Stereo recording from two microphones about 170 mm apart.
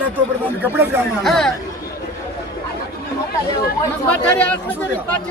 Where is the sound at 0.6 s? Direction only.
15° right (ahead or behind).